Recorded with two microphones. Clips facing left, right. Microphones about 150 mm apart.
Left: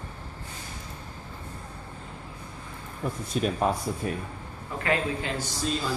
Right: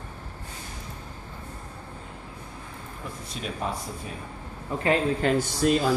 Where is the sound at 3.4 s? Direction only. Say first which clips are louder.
Left 9 dB; 50° left (ahead or behind).